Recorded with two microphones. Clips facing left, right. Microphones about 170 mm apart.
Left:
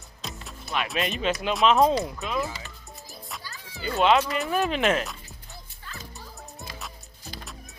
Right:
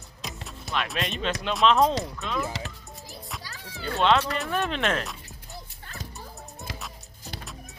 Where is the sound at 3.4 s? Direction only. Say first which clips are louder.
Right 1 dB; 70° right (ahead or behind).